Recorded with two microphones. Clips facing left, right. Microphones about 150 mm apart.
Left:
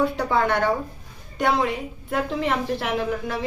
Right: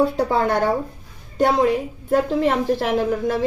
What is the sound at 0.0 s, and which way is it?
A woman's voice, 30° right (ahead or behind).